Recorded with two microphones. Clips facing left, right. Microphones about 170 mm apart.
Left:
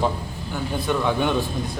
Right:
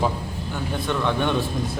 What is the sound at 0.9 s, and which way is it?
Speech, 5° left (ahead or behind).